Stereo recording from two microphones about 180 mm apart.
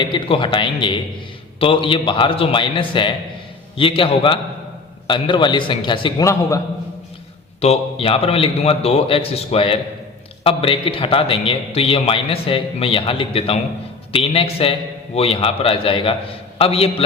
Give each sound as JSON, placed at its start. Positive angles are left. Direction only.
{"t": 0.0, "sound": "a man's voice", "side_deg": 25}
{"t": 7.6, "sound": "a man's voice", "side_deg": 35}